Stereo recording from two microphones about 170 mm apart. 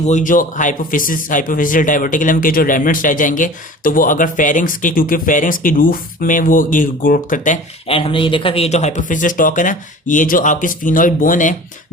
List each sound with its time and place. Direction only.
0.0 s a man's voice: 45° left (ahead or behind)
7.9 s a man's voice: 30° left (ahead or behind); by 11.5 s 50° left (ahead or behind)